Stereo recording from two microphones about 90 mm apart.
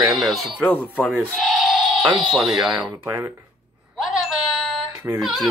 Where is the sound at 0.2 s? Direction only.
Centre (ahead or behind).